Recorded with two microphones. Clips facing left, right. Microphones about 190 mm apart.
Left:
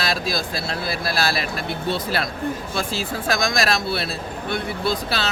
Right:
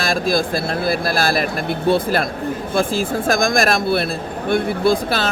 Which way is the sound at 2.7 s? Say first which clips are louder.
Right 7 dB; 50° right (ahead or behind).